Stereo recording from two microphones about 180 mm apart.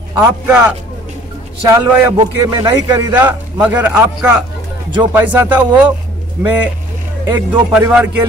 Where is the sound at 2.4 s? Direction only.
20° right (ahead or behind).